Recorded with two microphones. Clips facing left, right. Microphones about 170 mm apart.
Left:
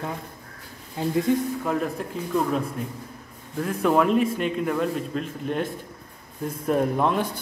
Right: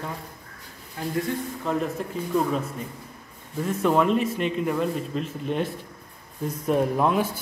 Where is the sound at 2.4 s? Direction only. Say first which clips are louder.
Left 1 dB; centre (ahead or behind).